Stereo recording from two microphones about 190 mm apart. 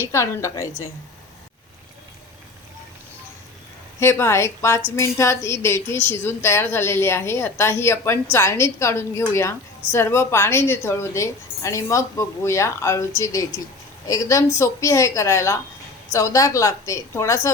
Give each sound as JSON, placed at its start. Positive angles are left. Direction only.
{"t": 0.0, "sound": "a woman's voice", "side_deg": 15}
{"t": 4.0, "sound": "a woman's voice", "side_deg": 15}